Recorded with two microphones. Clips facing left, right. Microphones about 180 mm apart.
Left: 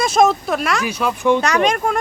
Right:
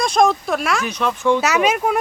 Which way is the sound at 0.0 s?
5° left (ahead or behind).